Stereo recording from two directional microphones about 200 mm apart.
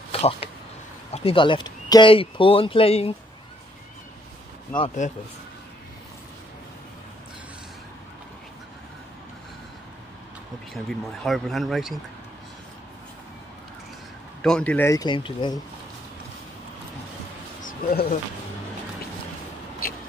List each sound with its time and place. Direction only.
0.1 s speech: 30° left (ahead or behind)
5.0 s speech: 40° left (ahead or behind)
10.7 s speech: centre (ahead or behind)
14.4 s speech: 5° left (ahead or behind); by 15.6 s 25° left (ahead or behind)
17.6 s a sound: 40° left (ahead or behind)
19.8 s a sound: 50° left (ahead or behind)